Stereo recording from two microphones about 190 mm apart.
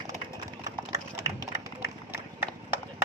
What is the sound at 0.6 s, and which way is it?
Run, 15° right (ahead or behind).